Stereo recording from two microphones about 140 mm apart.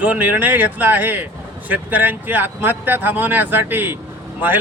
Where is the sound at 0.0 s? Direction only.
10° right (ahead or behind).